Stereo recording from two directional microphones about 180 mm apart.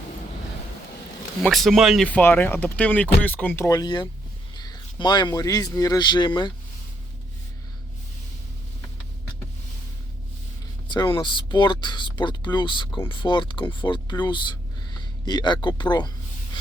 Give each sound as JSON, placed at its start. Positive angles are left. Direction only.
{"t": 1.4, "sound": "speech", "side_deg": 0}
{"t": 10.8, "sound": "speech", "side_deg": 25}